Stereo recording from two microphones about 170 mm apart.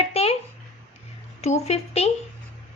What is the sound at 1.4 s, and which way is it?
Speech, 40° left (ahead or behind).